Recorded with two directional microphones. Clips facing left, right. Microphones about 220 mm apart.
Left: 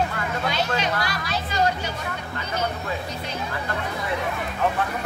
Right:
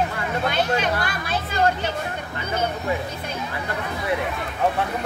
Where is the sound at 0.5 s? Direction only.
55° right (ahead or behind).